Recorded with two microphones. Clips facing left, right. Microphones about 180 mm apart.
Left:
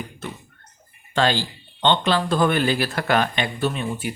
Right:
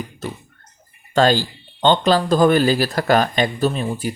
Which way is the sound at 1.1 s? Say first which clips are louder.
Right 5 dB; 45° right (ahead or behind).